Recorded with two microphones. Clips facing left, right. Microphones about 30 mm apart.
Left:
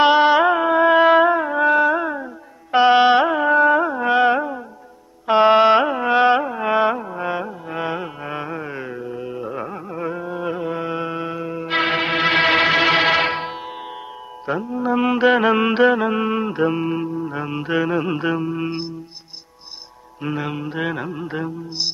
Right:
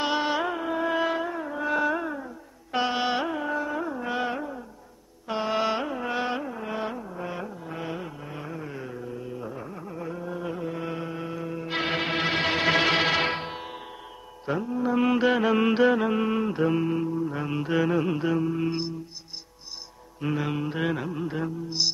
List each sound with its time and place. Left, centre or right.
0.0 s music: left
1.1 s music: left
1.7 s music: left
2.7 s carnatic music: left
11.0 s music: left
11.3 s music: left
12.4 s music: left
12.6 s music: centre
17.4 s mantra: centre
18.1 s mantra: left
20.2 s mantra: centre